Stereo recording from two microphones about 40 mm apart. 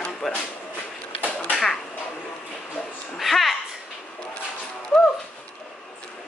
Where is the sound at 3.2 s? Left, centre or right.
Centre.